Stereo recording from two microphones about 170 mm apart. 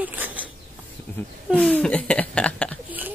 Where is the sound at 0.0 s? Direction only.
10° right (ahead or behind).